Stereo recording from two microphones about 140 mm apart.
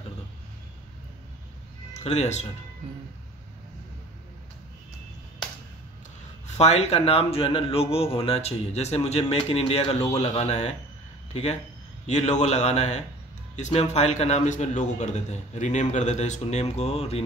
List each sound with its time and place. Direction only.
2.0 s speech: 55° left (ahead or behind)
6.4 s a man's voice: 50° left (ahead or behind)
12.1 s a man's voice: 55° left (ahead or behind)